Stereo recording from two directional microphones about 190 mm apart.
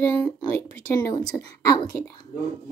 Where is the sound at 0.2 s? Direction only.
10° left (ahead or behind).